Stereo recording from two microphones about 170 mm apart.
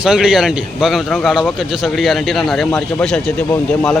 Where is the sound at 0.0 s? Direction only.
5° right (ahead or behind).